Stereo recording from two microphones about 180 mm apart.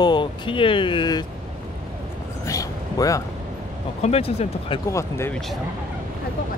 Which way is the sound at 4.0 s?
35° left (ahead or behind).